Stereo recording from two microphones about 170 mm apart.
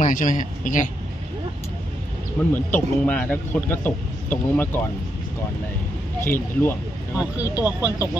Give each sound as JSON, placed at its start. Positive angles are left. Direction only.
{"t": 0.0, "sound": "a man's voice", "side_deg": 50}
{"t": 2.4, "sound": "speech", "side_deg": 5}
{"t": 6.2, "sound": "speech", "side_deg": 15}
{"t": 7.5, "sound": "speech", "side_deg": -10}